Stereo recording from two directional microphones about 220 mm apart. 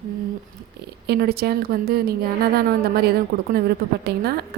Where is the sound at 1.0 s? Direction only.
45° right (ahead or behind).